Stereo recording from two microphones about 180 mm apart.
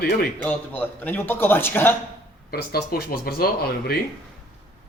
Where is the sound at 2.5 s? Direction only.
60° left (ahead or behind).